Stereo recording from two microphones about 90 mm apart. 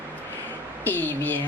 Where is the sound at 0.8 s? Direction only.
20° left (ahead or behind).